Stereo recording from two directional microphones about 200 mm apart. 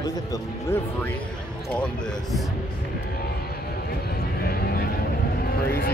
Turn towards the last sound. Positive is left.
turn(degrees=50)  # may be behind; listen again after turning